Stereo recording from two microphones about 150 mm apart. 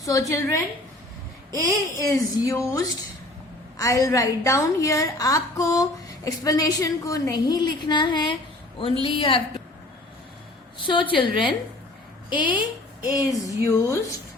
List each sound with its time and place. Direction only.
0.0 s a woman's voice: 20° left (ahead or behind); by 9.4 s 40° left (ahead or behind)
10.8 s a woman's voice: 35° left (ahead or behind)
12.3 s a woman's voice: 10° right (ahead or behind)
13.7 s a woman's voice: 20° left (ahead or behind)